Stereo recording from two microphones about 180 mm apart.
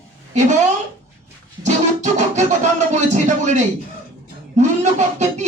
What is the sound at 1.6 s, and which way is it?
Music, 40° right (ahead or behind).